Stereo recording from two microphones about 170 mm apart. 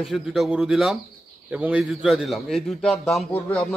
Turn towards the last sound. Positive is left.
turn(degrees=10)  # may be behind; listen again after turning